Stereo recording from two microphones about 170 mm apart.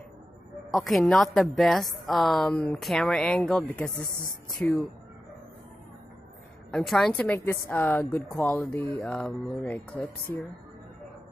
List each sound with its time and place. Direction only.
0.7 s a woman's voice: centre (ahead or behind)
6.7 s speech: 5° left (ahead or behind)